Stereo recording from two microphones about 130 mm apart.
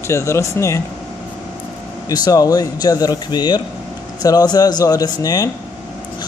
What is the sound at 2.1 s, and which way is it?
Speech, 30° left (ahead or behind).